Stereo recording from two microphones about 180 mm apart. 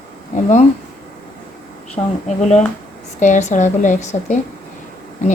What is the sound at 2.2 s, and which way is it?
A woman's voice, 40° left (ahead or behind).